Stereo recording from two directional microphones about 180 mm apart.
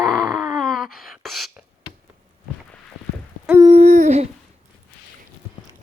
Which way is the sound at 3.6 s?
30° right (ahead or behind).